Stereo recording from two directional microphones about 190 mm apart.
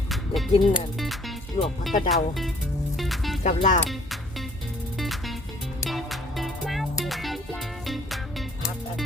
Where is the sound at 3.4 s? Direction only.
40° left (ahead or behind).